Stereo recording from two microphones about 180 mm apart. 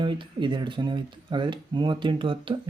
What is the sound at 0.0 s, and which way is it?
Speech, 25° right (ahead or behind).